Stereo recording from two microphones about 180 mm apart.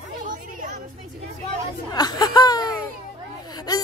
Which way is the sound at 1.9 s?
20° left (ahead or behind).